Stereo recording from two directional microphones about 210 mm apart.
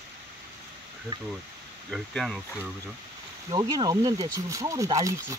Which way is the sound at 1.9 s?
Centre (ahead or behind).